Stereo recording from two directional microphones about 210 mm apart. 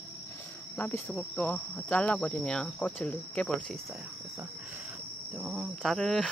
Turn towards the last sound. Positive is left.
turn(degrees=0)  # may be behind; listen again after turning